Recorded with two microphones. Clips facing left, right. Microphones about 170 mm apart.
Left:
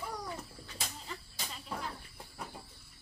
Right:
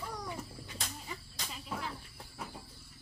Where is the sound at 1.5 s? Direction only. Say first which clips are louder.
Right 1 dB; 5° right (ahead or behind).